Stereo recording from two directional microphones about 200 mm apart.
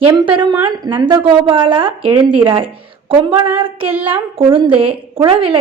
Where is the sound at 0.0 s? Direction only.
20° right (ahead or behind).